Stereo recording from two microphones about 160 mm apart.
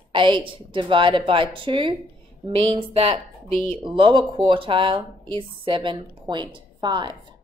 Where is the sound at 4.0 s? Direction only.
30° right (ahead or behind).